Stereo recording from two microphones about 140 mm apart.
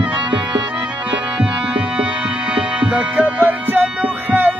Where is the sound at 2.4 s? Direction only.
10° right (ahead or behind).